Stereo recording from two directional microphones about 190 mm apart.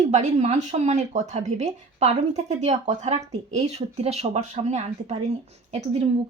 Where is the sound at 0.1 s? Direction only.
40° right (ahead or behind).